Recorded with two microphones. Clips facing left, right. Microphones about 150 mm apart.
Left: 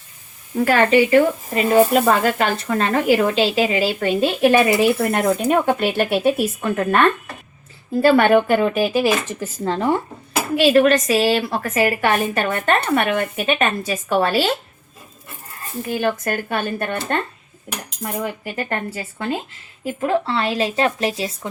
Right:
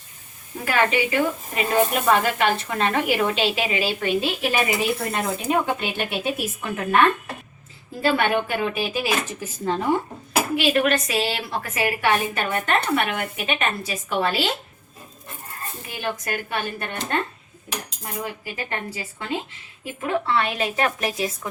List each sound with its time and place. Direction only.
0.6 s speech: 45° left (ahead or behind)
10.7 s speech: 40° left (ahead or behind)
15.9 s speech: 55° left (ahead or behind)
18.0 s speech: 50° left (ahead or behind)
19.8 s speech: 35° left (ahead or behind)